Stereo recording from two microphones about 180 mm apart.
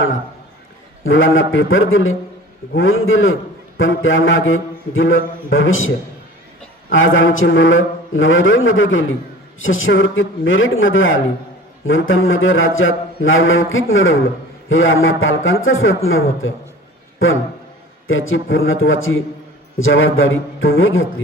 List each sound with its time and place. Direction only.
1.0 s a man's voice: 90° left
6.9 s a man's voice: 90° left